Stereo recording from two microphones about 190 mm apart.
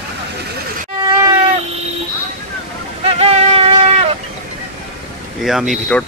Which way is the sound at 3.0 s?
30° right (ahead or behind).